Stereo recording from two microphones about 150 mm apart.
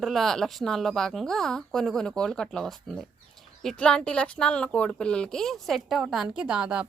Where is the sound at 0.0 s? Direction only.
Centre (ahead or behind).